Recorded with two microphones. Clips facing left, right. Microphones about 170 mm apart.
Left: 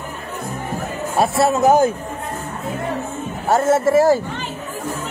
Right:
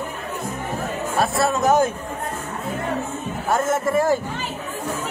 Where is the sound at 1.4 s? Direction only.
30° left (ahead or behind).